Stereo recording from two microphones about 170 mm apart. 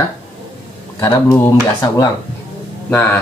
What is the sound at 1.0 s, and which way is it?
Speech, 15° left (ahead or behind).